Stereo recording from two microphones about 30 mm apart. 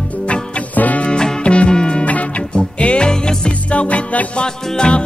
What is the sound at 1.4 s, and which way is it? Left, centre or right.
Music, left.